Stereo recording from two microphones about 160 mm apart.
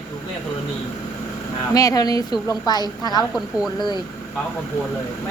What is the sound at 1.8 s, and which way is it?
A woman's voice, 20° left (ahead or behind).